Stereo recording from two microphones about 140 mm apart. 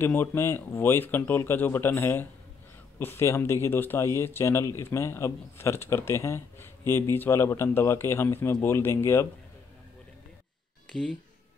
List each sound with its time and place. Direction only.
0.0 s speech: 15° left (ahead or behind)
10.9 s speech: 5° left (ahead or behind)